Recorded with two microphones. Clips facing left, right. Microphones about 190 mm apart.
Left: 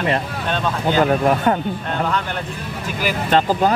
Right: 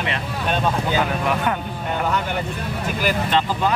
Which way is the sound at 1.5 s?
35° left (ahead or behind).